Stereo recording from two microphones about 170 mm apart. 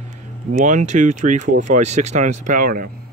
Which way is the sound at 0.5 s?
45° right (ahead or behind).